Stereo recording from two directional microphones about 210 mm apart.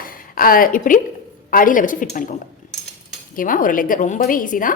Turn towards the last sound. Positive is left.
turn(degrees=40)  # may be behind; listen again after turning